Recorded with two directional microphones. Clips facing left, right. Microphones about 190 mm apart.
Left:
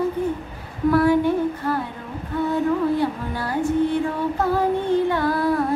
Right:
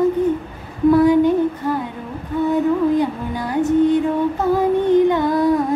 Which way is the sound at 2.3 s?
15° right (ahead or behind).